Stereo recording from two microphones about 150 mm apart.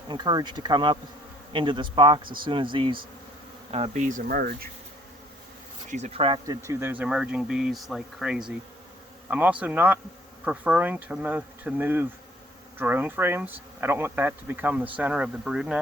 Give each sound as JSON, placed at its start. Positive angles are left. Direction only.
{"t": 0.1, "sound": "insect", "side_deg": -30}
{"t": 1.5, "sound": "speech", "side_deg": -30}
{"t": 5.9, "sound": "speech", "side_deg": -45}
{"t": 6.6, "sound": "speech", "side_deg": -20}